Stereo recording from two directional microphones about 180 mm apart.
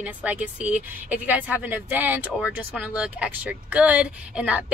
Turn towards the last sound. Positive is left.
turn(degrees=-5)  # may be behind; listen again after turning